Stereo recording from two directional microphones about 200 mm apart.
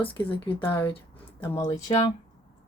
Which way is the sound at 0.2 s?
25° left (ahead or behind).